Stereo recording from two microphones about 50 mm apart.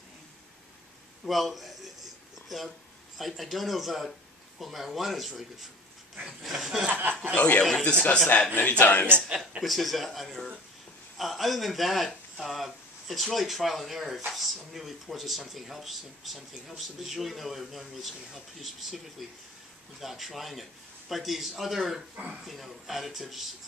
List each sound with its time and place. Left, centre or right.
1.2 s a man's voice: centre
3.2 s speech: centre
6.9 s speech: right
7.3 s speech: left
9.6 s speech: centre
22.1 s speech: right
22.5 s speech: centre